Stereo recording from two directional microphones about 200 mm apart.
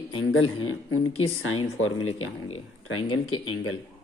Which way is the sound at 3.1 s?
90° left.